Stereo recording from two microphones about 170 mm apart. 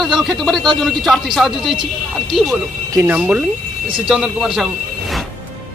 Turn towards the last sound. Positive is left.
turn(degrees=0)  # may be behind; listen again after turning